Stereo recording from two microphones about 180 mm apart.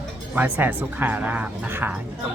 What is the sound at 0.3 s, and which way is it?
Speech, 10° right (ahead or behind).